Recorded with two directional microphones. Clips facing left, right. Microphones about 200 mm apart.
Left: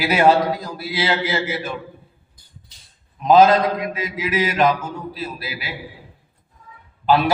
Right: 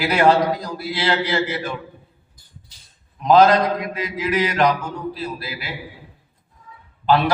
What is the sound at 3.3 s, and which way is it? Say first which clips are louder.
A man's voice: left 1 dB; 25° left (ahead or behind).